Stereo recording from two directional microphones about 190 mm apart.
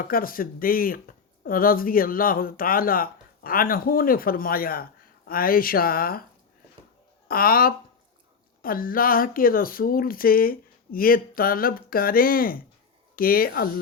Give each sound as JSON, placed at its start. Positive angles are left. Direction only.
{"t": 0.0, "sound": "speech", "side_deg": 50}
{"t": 7.3, "sound": "speech", "side_deg": 50}